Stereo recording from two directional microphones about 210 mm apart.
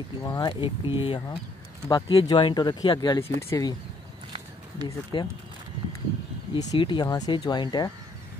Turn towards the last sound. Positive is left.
turn(degrees=20)  # may be behind; listen again after turning